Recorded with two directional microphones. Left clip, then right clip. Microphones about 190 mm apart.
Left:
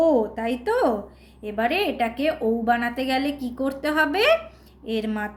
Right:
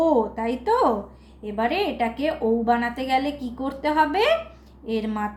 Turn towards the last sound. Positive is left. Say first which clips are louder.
# right 1 dB
turn(degrees=20)  # may be behind; listen again after turning